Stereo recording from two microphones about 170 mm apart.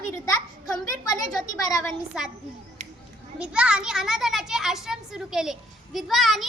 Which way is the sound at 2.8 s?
45° right (ahead or behind).